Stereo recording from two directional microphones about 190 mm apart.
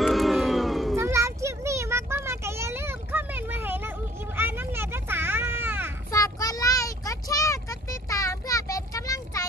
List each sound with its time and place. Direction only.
0.0 s cat: centre (ahead or behind)
0.9 s a sound: 15° right (ahead or behind)
6.1 s child singing: 20° left (ahead or behind)